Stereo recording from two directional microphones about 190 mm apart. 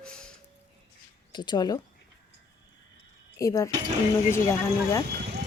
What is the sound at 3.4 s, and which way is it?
Speech, 15° left (ahead or behind).